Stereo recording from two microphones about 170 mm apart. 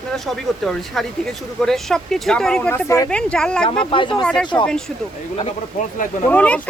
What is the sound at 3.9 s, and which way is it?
Speech, 30° left (ahead or behind).